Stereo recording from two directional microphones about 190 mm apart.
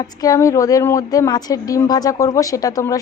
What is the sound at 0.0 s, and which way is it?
A woman's voice, 20° left (ahead or behind).